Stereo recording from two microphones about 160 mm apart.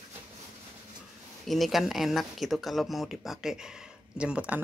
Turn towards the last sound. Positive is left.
turn(degrees=-5)  # may be behind; listen again after turning